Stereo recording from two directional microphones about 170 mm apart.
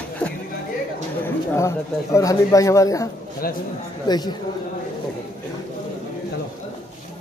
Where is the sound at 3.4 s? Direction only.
60° left (ahead or behind).